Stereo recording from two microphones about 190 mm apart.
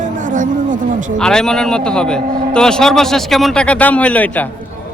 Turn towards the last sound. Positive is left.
turn(degrees=10)  # may be behind; listen again after turning